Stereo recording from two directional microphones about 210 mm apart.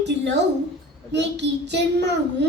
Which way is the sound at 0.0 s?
55° right (ahead or behind).